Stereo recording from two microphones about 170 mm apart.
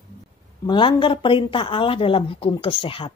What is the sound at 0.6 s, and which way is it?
Speech, 30° left (ahead or behind).